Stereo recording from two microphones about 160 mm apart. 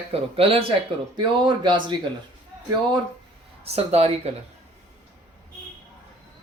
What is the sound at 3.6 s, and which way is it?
Speech, 40° right (ahead or behind).